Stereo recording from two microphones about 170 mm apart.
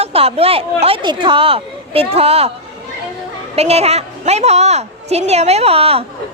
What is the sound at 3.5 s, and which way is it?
A woman's voice, 40° right (ahead or behind).